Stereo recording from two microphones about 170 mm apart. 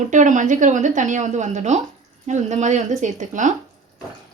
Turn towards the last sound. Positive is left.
turn(degrees=-45)  # may be behind; listen again after turning